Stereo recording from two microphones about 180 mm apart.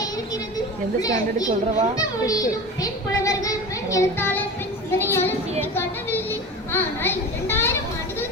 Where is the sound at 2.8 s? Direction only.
20° left (ahead or behind).